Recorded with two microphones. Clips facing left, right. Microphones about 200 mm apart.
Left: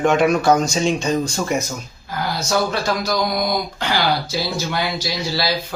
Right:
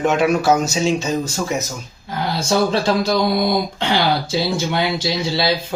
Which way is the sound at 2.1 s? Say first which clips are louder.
Right 2 dB; 25° right (ahead or behind).